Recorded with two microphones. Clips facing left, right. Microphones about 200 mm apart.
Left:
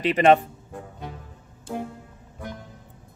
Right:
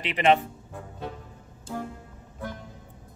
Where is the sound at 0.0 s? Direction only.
45° left (ahead or behind).